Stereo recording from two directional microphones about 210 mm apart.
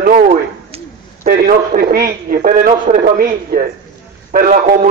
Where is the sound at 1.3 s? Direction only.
45° right (ahead or behind).